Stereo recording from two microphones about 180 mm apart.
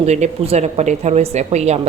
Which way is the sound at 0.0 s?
35° right (ahead or behind).